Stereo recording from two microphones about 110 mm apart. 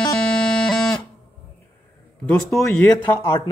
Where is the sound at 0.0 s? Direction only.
5° left (ahead or behind).